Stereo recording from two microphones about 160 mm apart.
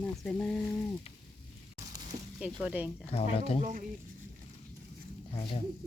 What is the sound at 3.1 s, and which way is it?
Speech, 40° left (ahead or behind).